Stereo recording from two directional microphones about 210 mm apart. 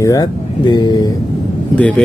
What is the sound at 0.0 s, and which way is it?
Speech, 15° left (ahead or behind).